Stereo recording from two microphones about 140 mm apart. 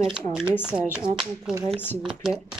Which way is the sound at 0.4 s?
5° right (ahead or behind).